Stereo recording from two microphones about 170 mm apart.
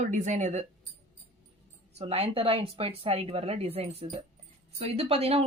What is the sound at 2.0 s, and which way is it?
Speech, 35° right (ahead or behind).